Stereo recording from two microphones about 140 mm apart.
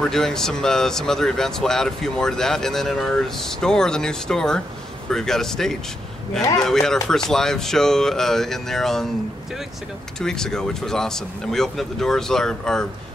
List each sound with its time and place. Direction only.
0.0 s speech: 5° left (ahead or behind)
10.2 s speech: 5° left (ahead or behind)